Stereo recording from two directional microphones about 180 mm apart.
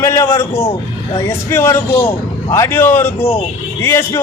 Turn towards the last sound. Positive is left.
turn(degrees=15)  # may be behind; listen again after turning